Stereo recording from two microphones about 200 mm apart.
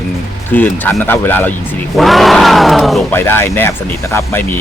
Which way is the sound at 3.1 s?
10° left (ahead or behind).